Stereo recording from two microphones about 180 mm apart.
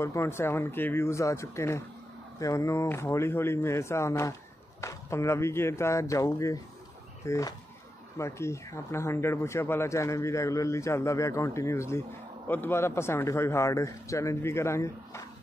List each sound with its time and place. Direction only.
0.0 s speech: 15° left (ahead or behind)